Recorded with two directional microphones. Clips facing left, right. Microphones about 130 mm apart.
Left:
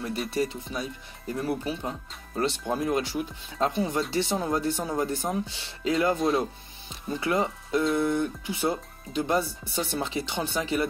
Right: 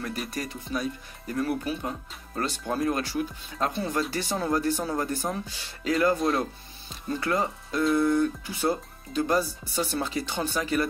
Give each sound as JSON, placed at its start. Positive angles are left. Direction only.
{"t": 0.3, "sound": "speech", "side_deg": 25}
{"t": 6.1, "sound": "speech", "side_deg": 0}
{"t": 6.9, "sound": "speech", "side_deg": 25}